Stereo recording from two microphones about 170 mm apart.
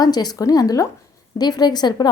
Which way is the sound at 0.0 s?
25° left (ahead or behind).